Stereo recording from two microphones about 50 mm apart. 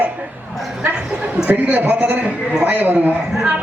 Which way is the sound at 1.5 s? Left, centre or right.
Right.